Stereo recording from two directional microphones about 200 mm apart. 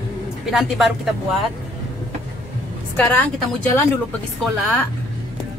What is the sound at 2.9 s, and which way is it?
Speech, 10° left (ahead or behind).